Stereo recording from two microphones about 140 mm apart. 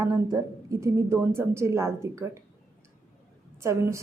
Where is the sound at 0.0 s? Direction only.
25° right (ahead or behind).